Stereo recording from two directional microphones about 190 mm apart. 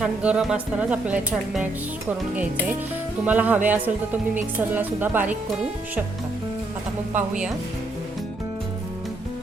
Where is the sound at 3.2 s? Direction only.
10° right (ahead or behind).